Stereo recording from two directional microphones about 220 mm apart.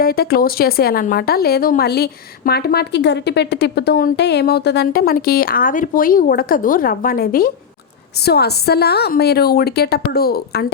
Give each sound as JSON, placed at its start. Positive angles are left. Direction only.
{"t": 0.0, "sound": "speech", "side_deg": 45}